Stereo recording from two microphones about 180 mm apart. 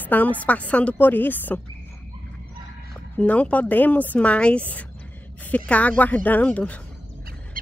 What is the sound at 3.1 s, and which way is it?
A woman's voice, 5° left (ahead or behind).